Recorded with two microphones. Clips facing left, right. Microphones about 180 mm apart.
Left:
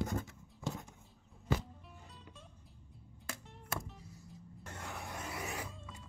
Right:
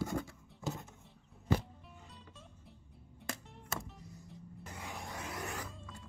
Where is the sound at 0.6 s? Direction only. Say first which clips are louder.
Right 1 dB; centre (ahead or behind).